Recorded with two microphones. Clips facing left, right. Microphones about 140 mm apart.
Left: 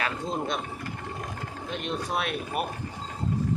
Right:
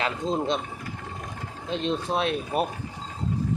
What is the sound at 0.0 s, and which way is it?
Speech, 25° right (ahead or behind).